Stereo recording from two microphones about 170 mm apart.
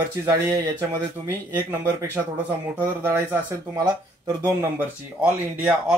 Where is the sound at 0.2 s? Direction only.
20° right (ahead or behind).